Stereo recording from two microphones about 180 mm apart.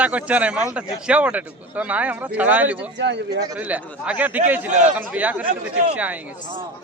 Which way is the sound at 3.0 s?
75° right (ahead or behind).